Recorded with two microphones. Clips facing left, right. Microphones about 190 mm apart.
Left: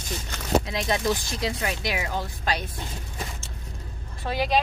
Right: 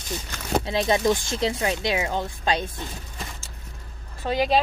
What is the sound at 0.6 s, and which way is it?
Speech, 25° right (ahead or behind).